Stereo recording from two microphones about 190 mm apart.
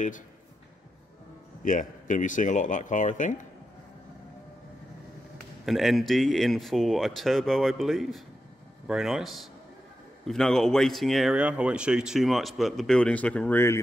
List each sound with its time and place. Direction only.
1.6 s speech: 45° left (ahead or behind)
5.7 s speech: centre (ahead or behind)